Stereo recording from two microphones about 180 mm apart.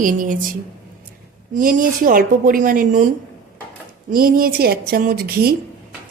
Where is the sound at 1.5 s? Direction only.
50° right (ahead or behind).